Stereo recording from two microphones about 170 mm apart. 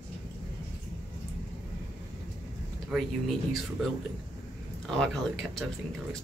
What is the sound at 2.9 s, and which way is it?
Speech, centre (ahead or behind).